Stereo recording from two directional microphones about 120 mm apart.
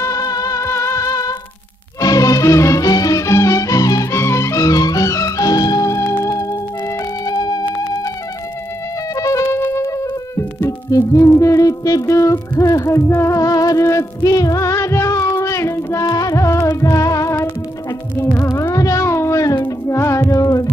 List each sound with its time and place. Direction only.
0.0 s music: 30° left (ahead or behind)
9.1 s music: 30° left (ahead or behind)
18.1 s music: 15° left (ahead or behind)
18.4 s music: 30° left (ahead or behind)